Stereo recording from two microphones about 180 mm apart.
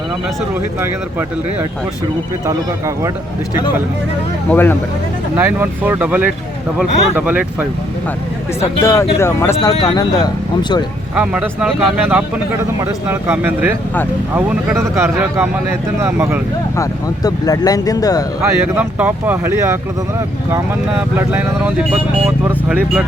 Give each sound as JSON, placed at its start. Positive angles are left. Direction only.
{"t": 2.5, "sound": "speech", "side_deg": -15}
{"t": 4.4, "sound": "speech", "side_deg": 10}
{"t": 5.4, "sound": "speech", "side_deg": -10}
{"t": 8.6, "sound": "speech", "side_deg": 15}
{"t": 11.1, "sound": "speech", "side_deg": -5}
{"t": 16.7, "sound": "speech", "side_deg": 20}
{"t": 18.4, "sound": "speech", "side_deg": -10}
{"t": 20.9, "sound": "speech", "side_deg": -10}